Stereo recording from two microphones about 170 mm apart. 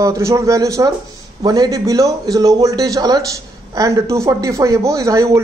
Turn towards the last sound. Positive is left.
turn(degrees=-20)  # may be behind; listen again after turning